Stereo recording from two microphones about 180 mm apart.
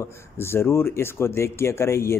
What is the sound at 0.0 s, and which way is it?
Speech, 15° left (ahead or behind).